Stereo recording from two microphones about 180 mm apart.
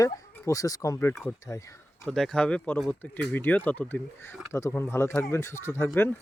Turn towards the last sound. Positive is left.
turn(degrees=15)  # may be behind; listen again after turning